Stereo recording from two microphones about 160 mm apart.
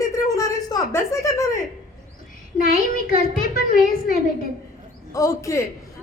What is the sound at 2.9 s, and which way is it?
A child's voice, 60° left (ahead or behind).